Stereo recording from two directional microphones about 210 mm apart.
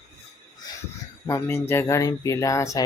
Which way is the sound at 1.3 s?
10° left (ahead or behind).